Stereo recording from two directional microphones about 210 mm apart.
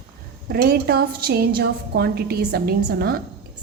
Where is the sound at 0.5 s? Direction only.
50° right (ahead or behind).